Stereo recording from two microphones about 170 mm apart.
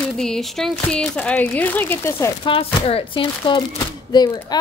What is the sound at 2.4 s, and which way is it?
Speech, 35° left (ahead or behind).